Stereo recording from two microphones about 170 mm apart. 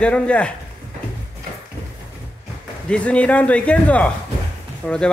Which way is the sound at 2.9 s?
5° left (ahead or behind).